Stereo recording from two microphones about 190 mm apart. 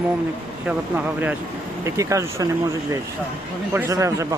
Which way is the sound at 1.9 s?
15° right (ahead or behind).